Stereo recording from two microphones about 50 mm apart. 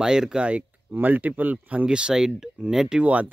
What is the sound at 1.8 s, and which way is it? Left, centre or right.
Speech, centre.